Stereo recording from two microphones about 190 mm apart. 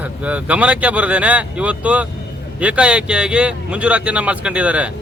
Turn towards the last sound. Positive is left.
turn(degrees=-5)  # may be behind; listen again after turning